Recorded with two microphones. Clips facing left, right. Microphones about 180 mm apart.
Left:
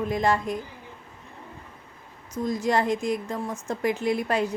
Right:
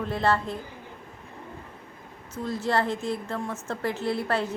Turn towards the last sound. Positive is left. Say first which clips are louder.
# left 2 dB
turn(degrees=15)  # may be behind; listen again after turning